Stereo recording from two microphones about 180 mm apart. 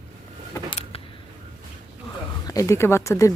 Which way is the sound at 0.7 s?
30° left (ahead or behind).